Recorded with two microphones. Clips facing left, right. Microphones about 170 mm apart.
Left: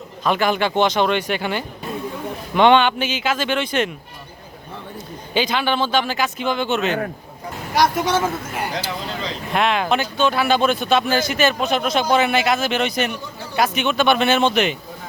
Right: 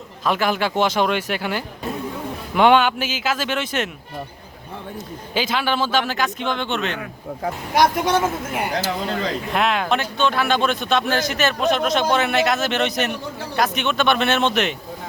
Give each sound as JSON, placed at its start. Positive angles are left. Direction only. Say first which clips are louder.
{"t": 0.3, "sound": "speech", "louder": "left 2 dB", "side_deg": 0}
{"t": 5.3, "sound": "speech", "louder": "left 2 dB", "side_deg": 0}
{"t": 7.8, "sound": "speech", "louder": "even", "side_deg": -15}
{"t": 8.7, "sound": "speech", "louder": "right 3 dB", "side_deg": -50}
{"t": 9.5, "sound": "speech", "louder": "left 3 dB", "side_deg": 0}